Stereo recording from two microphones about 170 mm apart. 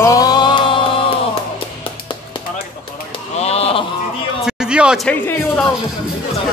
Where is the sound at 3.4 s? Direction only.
35° left (ahead or behind).